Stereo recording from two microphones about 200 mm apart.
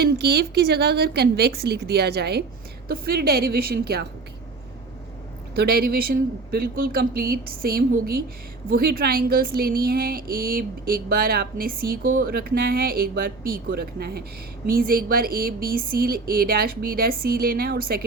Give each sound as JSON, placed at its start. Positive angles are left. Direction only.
{"t": 0.0, "sound": "speech", "side_deg": -55}
{"t": 5.5, "sound": "speech", "side_deg": -50}